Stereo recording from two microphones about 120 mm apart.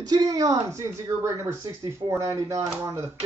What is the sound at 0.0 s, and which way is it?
Speech, 30° right (ahead or behind).